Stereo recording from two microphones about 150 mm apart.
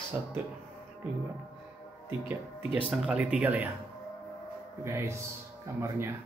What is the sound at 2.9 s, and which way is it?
Speech, 5° right (ahead or behind).